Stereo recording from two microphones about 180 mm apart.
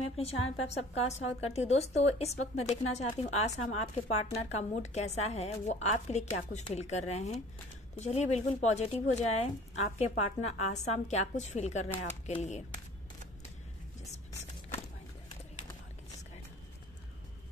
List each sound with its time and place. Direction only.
0.7 s speech: 35° left (ahead or behind)